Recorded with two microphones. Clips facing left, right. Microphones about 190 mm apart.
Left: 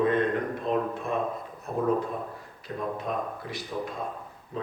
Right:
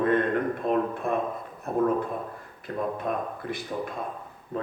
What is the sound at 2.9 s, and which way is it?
Speech, 55° right (ahead or behind).